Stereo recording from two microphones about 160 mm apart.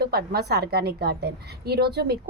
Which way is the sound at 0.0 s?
80° right.